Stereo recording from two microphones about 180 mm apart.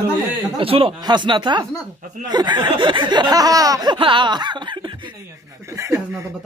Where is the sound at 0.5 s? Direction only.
30° right (ahead or behind).